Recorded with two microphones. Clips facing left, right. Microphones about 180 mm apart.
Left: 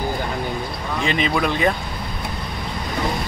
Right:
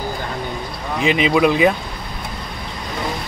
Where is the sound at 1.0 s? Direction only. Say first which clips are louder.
Right 6 dB; 5° right (ahead or behind).